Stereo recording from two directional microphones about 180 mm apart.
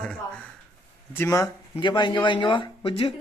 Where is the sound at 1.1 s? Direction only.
15° left (ahead or behind).